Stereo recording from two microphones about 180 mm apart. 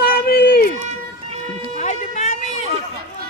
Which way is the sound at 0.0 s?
55° left (ahead or behind).